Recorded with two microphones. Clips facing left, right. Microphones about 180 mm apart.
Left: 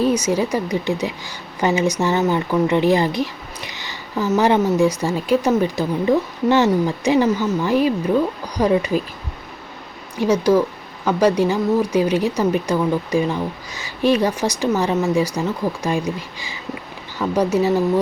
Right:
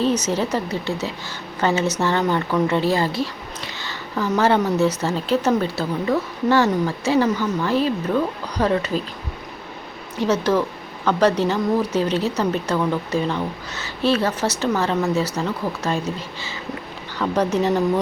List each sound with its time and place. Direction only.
0.0 s speech: 10° left (ahead or behind)
3.7 s a sound: 15° left (ahead or behind)
4.3 s speech: 15° left (ahead or behind)
10.2 s speech: 10° left (ahead or behind)